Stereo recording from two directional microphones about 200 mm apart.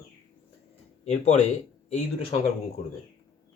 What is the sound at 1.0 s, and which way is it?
Speech, 35° left (ahead or behind).